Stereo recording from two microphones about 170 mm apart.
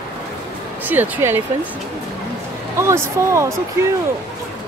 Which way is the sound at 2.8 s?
15° right (ahead or behind).